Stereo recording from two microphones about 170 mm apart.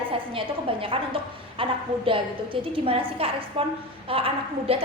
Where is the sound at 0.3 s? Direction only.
30° right (ahead or behind).